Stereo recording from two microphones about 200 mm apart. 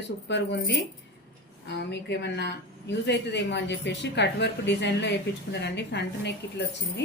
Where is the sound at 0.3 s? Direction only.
60° left (ahead or behind).